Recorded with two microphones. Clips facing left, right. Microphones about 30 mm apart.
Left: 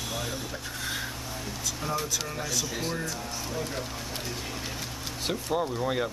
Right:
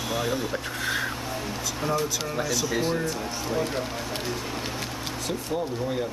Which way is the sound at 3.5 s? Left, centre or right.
Right.